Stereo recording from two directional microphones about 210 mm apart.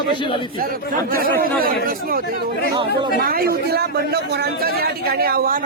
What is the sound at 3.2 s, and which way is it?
A man's voice, 45° right (ahead or behind).